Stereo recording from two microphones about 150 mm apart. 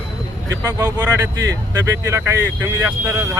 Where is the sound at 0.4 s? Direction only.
20° right (ahead or behind).